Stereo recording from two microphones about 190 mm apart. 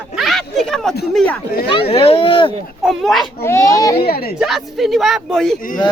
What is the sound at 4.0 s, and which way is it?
Speech, 55° left (ahead or behind).